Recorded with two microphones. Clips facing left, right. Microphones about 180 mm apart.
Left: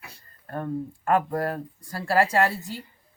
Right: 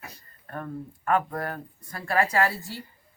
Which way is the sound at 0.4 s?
30° left (ahead or behind).